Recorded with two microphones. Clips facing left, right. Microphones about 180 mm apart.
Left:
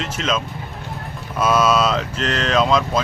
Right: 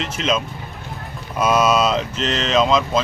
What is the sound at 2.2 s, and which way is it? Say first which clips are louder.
Speech: even; 30° right (ahead or behind).